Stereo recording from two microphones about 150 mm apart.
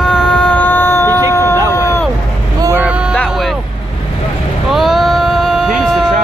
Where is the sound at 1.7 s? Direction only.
20° left (ahead or behind).